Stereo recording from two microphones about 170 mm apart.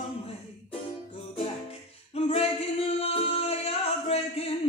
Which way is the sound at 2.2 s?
35° left (ahead or behind).